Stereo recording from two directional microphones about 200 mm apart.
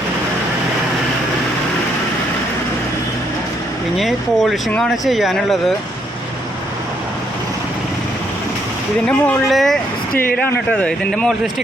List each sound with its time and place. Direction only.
3.9 s speech: centre (ahead or behind)
9.0 s speech: 5° left (ahead or behind)